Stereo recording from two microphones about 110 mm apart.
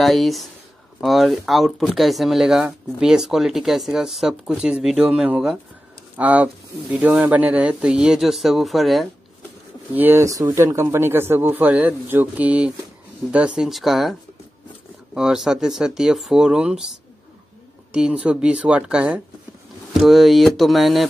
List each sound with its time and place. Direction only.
0.0 s speech: centre (ahead or behind)
9.9 s speech: 20° right (ahead or behind)
10.2 s speech: 30° right (ahead or behind); by 14.1 s centre (ahead or behind)
15.1 s speech: 5° right (ahead or behind)
17.9 s speech: 10° right (ahead or behind)